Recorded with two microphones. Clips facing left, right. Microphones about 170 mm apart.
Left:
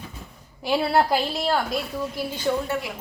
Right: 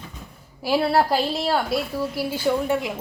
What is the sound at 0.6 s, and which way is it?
A woman's voice, centre (ahead or behind).